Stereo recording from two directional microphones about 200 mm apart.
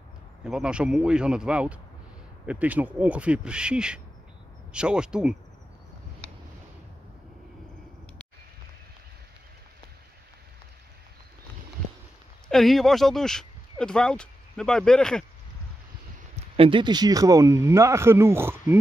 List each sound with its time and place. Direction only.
0.4 s speech: 5° right (ahead or behind)
12.4 s speech: centre (ahead or behind)
16.5 s speech: 25° right (ahead or behind); by 18.8 s 10° right (ahead or behind)